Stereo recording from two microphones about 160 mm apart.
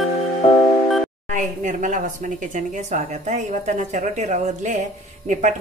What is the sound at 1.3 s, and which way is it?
A woman's voice, 50° right (ahead or behind).